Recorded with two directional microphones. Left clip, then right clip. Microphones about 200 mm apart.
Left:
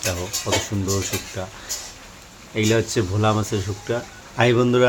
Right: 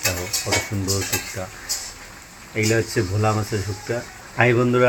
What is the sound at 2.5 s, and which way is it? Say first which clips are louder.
Speech: left 1 dB; 15° left (ahead or behind).